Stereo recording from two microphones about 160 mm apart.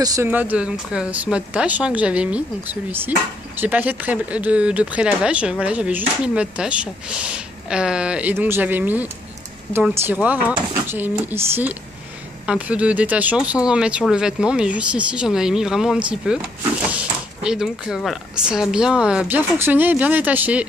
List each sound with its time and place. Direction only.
0.0 s speech: 20° right (ahead or behind)
0.3 s speech: 10° right (ahead or behind)